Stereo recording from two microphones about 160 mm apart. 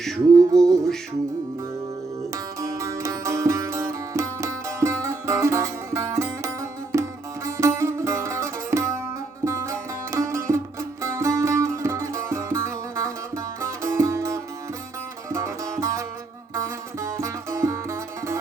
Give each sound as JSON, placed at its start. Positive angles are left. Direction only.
{"t": 0.5, "sound": "music", "side_deg": 5}
{"t": 2.6, "sound": "music", "side_deg": -20}